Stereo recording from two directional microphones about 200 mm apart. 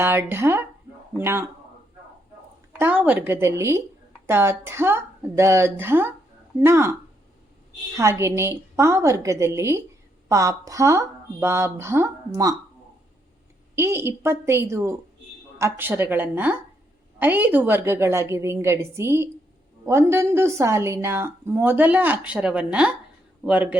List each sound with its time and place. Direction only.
0.0 s a woman's voice: 10° right (ahead or behind)
2.7 s a woman's voice: 10° right (ahead or behind)
7.9 s a woman's voice: 15° right (ahead or behind)
13.7 s a woman's voice: 15° right (ahead or behind)